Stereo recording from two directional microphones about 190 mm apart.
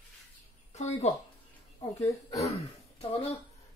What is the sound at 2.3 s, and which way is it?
Speech, 35° left (ahead or behind).